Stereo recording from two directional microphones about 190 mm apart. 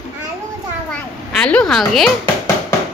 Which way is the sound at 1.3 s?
5° left (ahead or behind).